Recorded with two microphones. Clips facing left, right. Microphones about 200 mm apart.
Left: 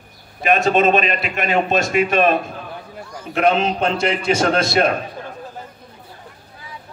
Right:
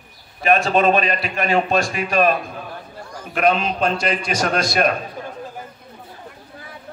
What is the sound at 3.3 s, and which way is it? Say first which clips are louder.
A man's voice: left 2 dB; 25° left (ahead or behind).